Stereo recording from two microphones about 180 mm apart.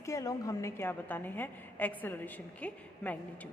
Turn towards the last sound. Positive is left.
turn(degrees=10)  # may be behind; listen again after turning